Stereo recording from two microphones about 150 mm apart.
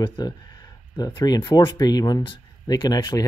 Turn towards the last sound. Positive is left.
turn(degrees=25)  # may be behind; listen again after turning